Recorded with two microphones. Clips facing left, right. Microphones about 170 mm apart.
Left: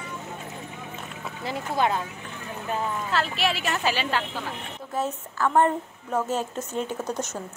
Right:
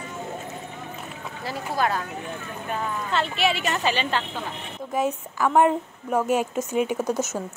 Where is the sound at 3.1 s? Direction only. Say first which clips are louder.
Right 4 dB; centre (ahead or behind).